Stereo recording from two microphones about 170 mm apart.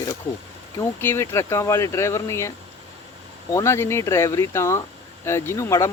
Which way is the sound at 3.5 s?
15° left (ahead or behind).